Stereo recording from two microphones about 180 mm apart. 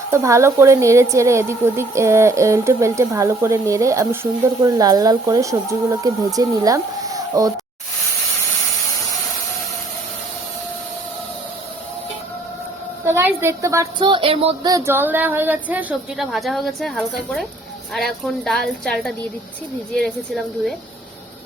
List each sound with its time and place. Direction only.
0.1 s a woman's voice: 15° right (ahead or behind)
13.1 s a woman's voice: 15° right (ahead or behind)
14.0 s speech: 30° right (ahead or behind)
14.7 s a woman's voice: 15° right (ahead or behind); by 20.7 s centre (ahead or behind)